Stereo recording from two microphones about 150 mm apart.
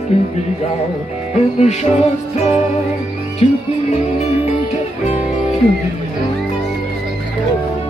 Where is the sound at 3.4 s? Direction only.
45° left (ahead or behind).